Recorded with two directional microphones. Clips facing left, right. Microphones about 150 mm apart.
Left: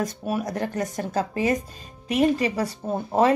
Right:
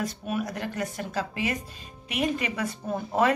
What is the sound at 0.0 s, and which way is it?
Speech, 40° left (ahead or behind).